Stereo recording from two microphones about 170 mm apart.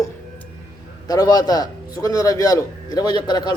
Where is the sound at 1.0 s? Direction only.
25° left (ahead or behind).